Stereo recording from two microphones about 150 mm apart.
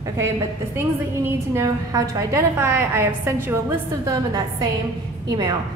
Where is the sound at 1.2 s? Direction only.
20° right (ahead or behind).